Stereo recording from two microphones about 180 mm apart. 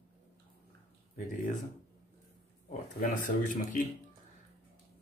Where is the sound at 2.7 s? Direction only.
45° left (ahead or behind).